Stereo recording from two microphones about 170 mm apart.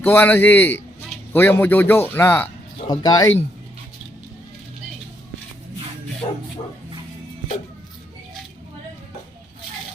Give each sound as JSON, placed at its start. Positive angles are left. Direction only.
{"t": 0.0, "sound": "a man's voice", "side_deg": 10}
{"t": 2.9, "sound": "speech", "side_deg": 25}
{"t": 6.2, "sound": "speech", "side_deg": 30}